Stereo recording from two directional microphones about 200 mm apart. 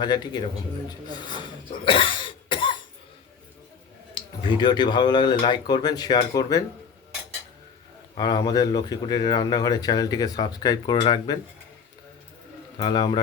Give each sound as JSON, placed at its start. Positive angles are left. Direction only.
{"t": 0.0, "sound": "speech", "side_deg": 20}
{"t": 4.1, "sound": "speech", "side_deg": 25}
{"t": 8.1, "sound": "speech", "side_deg": 20}
{"t": 12.8, "sound": "speech", "side_deg": 25}